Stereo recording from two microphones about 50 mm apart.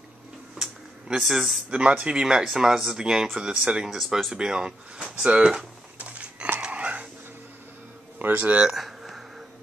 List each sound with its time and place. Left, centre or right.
1.0 s speech: centre
1.7 s speech: right
5.4 s speech: centre
5.9 s a sound: right
8.2 s speech: right
8.6 s a sound: centre